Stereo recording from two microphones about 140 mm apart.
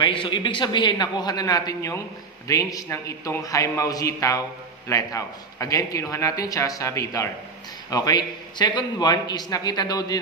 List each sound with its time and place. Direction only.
0.0 s a man's voice: 35° left (ahead or behind)